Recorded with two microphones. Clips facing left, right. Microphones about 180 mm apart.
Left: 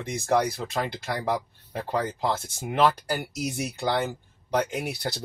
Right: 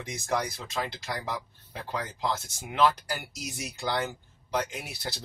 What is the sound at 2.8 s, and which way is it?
Speech, 60° left (ahead or behind).